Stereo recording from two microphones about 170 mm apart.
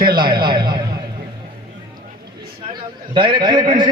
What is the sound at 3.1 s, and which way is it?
Speech, 30° right (ahead or behind).